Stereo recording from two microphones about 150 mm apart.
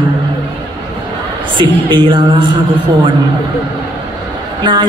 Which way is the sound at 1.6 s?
30° right (ahead or behind).